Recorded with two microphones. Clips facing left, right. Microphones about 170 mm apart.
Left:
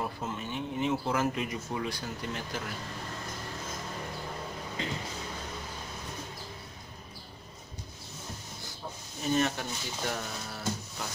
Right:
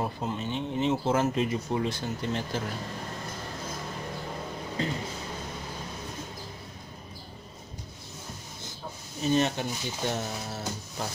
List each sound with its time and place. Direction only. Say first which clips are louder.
0.0 s speech: right 4 dB; 20° right (ahead or behind)
9.2 s speech: right 3 dB; 20° right (ahead or behind)